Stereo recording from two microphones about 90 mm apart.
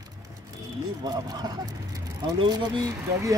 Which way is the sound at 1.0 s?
50° right (ahead or behind).